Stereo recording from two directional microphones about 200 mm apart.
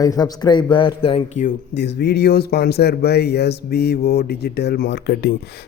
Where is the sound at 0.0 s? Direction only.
20° left (ahead or behind).